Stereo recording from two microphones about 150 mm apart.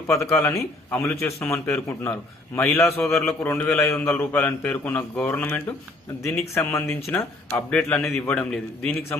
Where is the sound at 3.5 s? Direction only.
15° left (ahead or behind).